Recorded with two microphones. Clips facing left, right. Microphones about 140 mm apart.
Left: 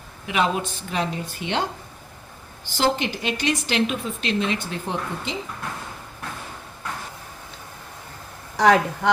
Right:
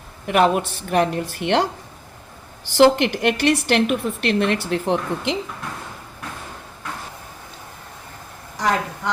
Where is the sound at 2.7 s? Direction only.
70° right (ahead or behind).